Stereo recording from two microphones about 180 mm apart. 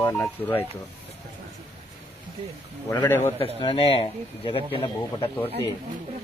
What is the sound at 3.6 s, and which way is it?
Speech, 30° left (ahead or behind).